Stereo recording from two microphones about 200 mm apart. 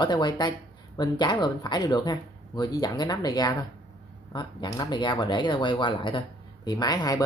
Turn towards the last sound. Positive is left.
turn(degrees=20)  # may be behind; listen again after turning